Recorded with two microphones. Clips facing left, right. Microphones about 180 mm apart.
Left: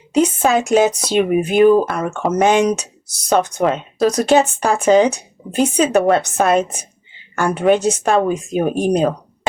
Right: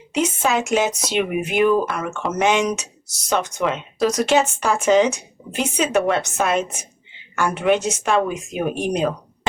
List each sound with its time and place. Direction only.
0.1 s speech: 35° left (ahead or behind)